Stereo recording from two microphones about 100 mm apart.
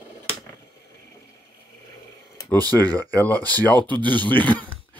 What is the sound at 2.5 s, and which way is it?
Speech, 40° right (ahead or behind).